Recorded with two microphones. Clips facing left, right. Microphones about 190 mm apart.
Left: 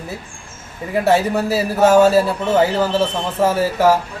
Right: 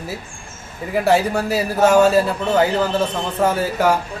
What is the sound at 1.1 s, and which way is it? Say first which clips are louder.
A man's voice: left 1 dB; centre (ahead or behind).